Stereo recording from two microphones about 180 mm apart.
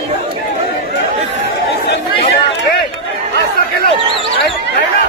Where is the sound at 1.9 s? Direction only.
65° left (ahead or behind).